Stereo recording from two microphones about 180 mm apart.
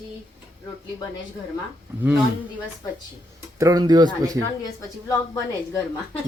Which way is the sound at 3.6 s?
20° right (ahead or behind).